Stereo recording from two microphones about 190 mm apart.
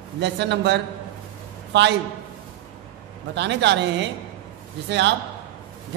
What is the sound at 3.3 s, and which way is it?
Speech, 65° right (ahead or behind).